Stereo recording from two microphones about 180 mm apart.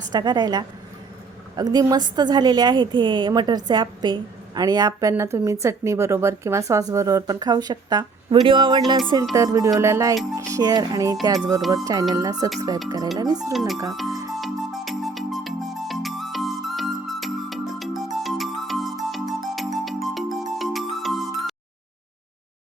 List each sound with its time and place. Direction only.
0.1 s a woman's voice: 20° right (ahead or behind)
9.3 s music: 20° right (ahead or behind)
10.3 s a woman's voice: 20° right (ahead or behind)
13.5 s speech: centre (ahead or behind)
14.1 s music: 20° right (ahead or behind)
14.3 s music: centre (ahead or behind)